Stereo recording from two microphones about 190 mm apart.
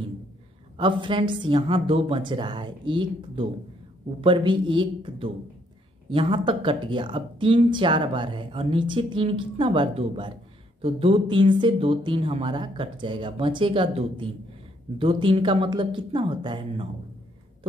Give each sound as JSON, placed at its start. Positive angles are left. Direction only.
{"t": 0.7, "sound": "speech", "side_deg": -25}